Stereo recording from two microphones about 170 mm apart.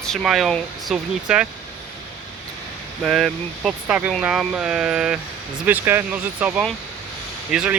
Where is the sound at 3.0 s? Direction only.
Centre (ahead or behind).